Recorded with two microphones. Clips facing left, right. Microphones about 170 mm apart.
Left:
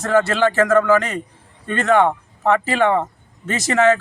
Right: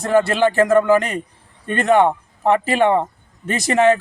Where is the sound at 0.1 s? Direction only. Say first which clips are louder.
Right 1 dB; 15° right (ahead or behind).